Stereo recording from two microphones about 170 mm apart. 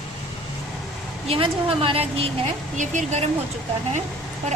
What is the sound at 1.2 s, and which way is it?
Speech, 35° right (ahead or behind).